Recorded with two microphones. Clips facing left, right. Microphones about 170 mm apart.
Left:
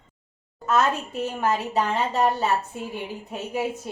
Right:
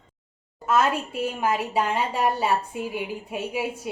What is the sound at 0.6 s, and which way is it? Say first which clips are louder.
A woman's voice: even; 10° right (ahead or behind).